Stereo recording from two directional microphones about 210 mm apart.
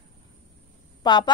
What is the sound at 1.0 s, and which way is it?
Speech, 20° left (ahead or behind).